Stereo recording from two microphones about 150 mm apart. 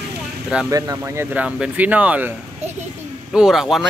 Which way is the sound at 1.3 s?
10° right (ahead or behind).